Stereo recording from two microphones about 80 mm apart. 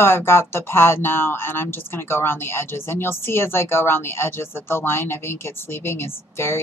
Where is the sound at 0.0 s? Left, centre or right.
Left.